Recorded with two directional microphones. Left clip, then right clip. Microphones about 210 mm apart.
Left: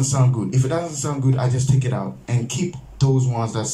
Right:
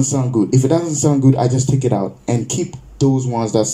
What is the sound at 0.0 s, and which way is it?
Speech, 30° right (ahead or behind).